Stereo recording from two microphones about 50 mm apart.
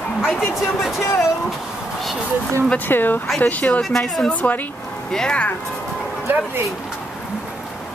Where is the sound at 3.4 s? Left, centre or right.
Left.